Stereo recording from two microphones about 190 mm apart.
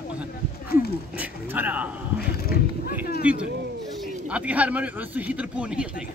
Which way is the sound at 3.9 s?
5° right (ahead or behind).